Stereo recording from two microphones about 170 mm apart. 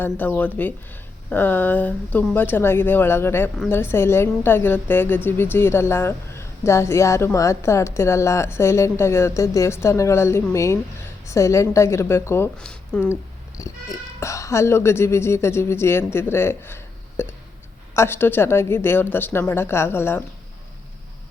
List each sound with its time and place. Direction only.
0.0 s a woman's voice: 10° left (ahead or behind)
12.5 s speech: 5° left (ahead or behind)
13.6 s a woman's voice: 20° left (ahead or behind)